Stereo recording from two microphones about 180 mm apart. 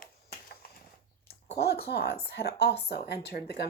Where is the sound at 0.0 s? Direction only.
55° left (ahead or behind).